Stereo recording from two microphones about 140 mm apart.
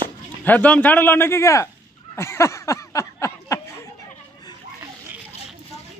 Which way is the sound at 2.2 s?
20° left (ahead or behind).